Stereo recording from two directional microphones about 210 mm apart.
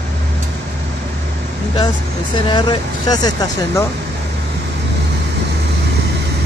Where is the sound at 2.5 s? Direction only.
20° left (ahead or behind).